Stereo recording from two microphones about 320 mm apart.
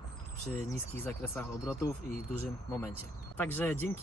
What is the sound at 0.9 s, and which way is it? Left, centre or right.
Speech, centre.